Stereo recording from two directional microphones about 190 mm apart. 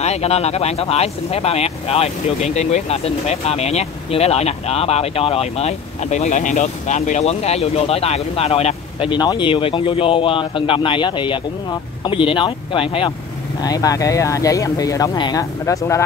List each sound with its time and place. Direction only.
0.0 s speech: 35° left (ahead or behind); by 16.0 s 15° left (ahead or behind)